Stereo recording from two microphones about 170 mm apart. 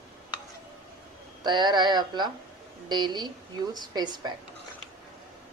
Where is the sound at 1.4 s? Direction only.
25° right (ahead or behind).